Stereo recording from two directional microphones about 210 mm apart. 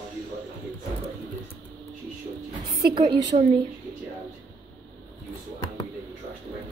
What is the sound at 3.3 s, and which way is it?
Speech, 40° right (ahead or behind).